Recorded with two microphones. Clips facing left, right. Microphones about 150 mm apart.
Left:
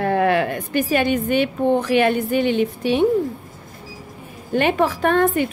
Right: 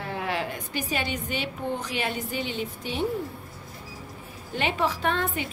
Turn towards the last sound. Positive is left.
turn(degrees=50)  # may be behind; listen again after turning